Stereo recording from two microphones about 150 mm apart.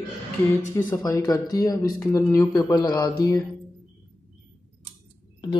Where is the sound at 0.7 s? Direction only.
20° left (ahead or behind).